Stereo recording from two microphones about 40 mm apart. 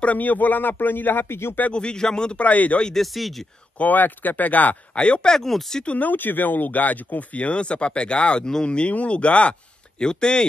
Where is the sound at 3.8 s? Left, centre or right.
Left.